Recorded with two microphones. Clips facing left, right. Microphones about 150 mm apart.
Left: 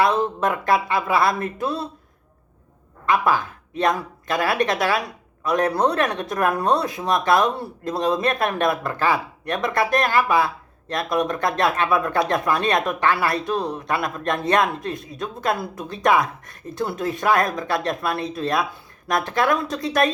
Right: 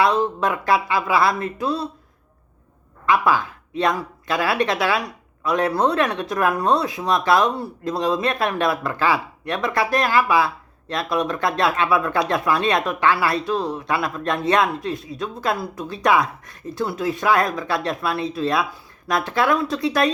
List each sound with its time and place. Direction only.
0.3 s speech: 50° left (ahead or behind)
3.1 s a man's voice: 50° left (ahead or behind)